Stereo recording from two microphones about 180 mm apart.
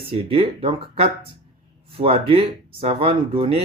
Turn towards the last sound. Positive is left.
turn(degrees=-30)  # may be behind; listen again after turning